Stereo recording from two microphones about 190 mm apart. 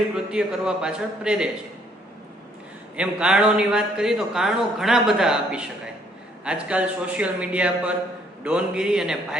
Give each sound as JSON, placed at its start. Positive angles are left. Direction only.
{"t": 0.3, "sound": "a man's voice", "side_deg": -5}
{"t": 2.9, "sound": "a man's voice", "side_deg": -5}